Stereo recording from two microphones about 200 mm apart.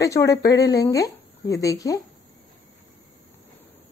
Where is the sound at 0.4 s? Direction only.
55° left (ahead or behind).